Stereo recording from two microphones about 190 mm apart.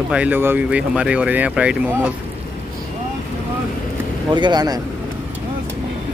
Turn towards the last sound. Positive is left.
turn(degrees=-20)  # may be behind; listen again after turning